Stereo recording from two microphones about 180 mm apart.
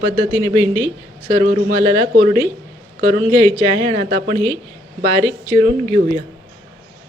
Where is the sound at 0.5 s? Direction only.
20° left (ahead or behind).